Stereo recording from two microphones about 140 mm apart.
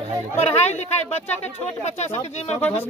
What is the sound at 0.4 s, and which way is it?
Speech, 50° left (ahead or behind).